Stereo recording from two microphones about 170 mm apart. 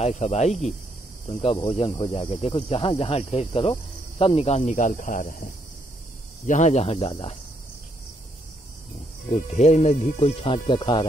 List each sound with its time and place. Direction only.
0.0 s speech: 40° left (ahead or behind)
9.3 s speech: 45° left (ahead or behind); by 11.1 s 30° left (ahead or behind)